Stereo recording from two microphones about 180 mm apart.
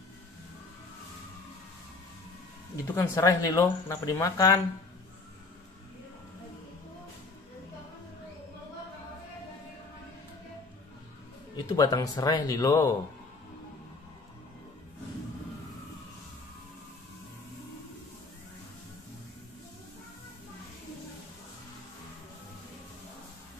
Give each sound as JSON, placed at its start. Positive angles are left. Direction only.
{"t": 2.7, "sound": "speech", "side_deg": 20}
{"t": 11.5, "sound": "speech", "side_deg": 20}